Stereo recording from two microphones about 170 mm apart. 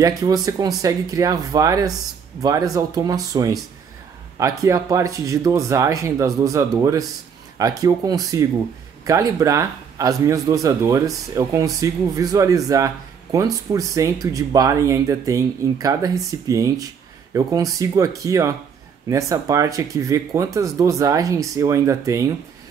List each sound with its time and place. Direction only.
0.0 s a man's voice: 20° right (ahead or behind)